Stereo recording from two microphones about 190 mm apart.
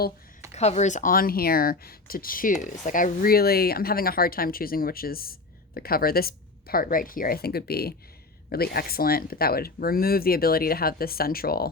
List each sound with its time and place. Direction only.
0.5 s speech: 35° left (ahead or behind); by 11.7 s 55° left (ahead or behind)